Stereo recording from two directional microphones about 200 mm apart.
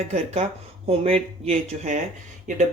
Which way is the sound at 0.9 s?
30° right (ahead or behind).